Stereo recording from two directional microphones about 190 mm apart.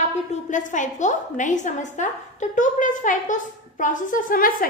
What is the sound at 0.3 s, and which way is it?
A woman's voice, 40° left (ahead or behind).